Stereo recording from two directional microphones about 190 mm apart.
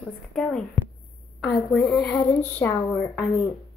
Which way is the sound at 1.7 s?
Centre (ahead or behind).